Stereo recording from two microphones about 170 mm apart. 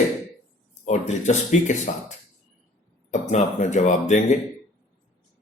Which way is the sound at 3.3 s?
45° left (ahead or behind).